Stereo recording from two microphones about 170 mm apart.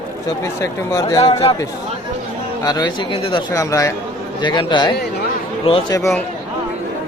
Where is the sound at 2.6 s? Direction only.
25° left (ahead or behind).